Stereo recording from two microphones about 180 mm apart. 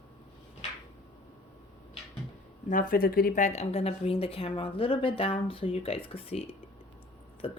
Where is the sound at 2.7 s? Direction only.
50° left (ahead or behind).